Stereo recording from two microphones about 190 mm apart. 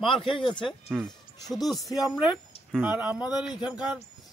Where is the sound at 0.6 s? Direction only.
Centre (ahead or behind).